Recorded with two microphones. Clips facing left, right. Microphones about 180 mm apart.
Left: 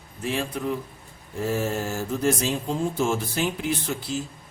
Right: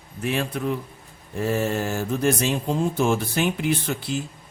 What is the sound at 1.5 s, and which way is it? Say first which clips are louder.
Speech: right 3 dB; 60° right (ahead or behind).